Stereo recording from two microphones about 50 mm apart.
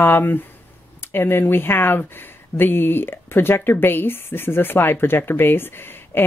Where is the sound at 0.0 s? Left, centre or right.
Left.